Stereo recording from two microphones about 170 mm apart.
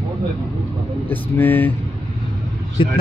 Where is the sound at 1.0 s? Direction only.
10° left (ahead or behind).